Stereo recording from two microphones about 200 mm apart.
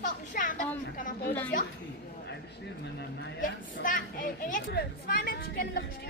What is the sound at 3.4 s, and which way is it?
A child's voice, 40° left (ahead or behind).